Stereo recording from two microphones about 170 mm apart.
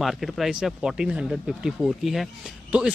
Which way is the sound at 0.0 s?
Centre (ahead or behind).